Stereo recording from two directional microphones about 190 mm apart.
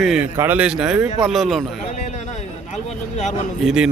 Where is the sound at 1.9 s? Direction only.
35° left (ahead or behind).